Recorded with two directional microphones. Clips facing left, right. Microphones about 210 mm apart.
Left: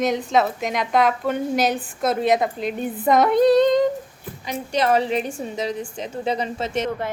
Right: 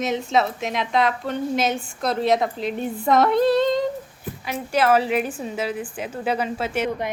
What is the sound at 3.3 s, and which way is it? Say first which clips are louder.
Female singing: left 3 dB; 45° left (ahead or behind).